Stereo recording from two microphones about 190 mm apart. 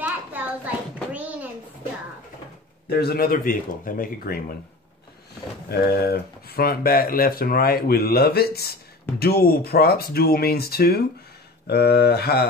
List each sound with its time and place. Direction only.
0.0 s a sound: 10° right (ahead or behind)
2.9 s speech: 55° left (ahead or behind)
5.7 s speech: 55° left (ahead or behind)